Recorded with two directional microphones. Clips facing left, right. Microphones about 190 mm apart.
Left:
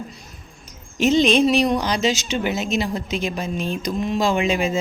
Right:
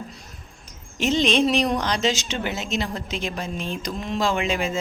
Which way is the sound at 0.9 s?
10° left (ahead or behind).